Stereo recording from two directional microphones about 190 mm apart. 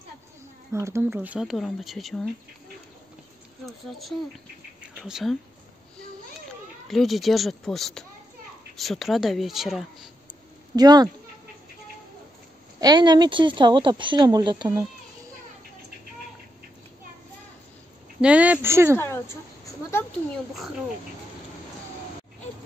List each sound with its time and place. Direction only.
0.7 s speech: 15° right (ahead or behind)
3.6 s speech: centre (ahead or behind)
6.9 s speech: centre (ahead or behind)
10.8 s speech: 20° right (ahead or behind)
12.8 s speech: 20° right (ahead or behind)
18.2 s speech: 5° right (ahead or behind)
18.9 s a woman's voice: 10° left (ahead or behind)